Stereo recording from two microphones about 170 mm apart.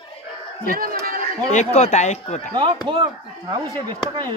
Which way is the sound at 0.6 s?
60° right (ahead or behind).